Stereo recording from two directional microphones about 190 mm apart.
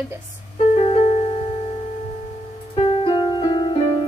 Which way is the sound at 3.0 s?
25° left (ahead or behind).